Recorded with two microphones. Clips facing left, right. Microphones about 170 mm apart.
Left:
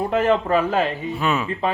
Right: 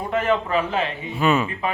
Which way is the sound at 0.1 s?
40° left (ahead or behind).